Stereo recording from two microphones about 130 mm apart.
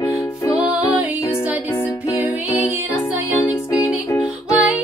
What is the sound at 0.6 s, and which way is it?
Music, 10° right (ahead or behind).